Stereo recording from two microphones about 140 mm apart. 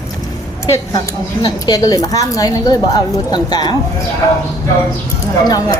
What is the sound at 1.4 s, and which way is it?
A woman's voice, 30° left (ahead or behind).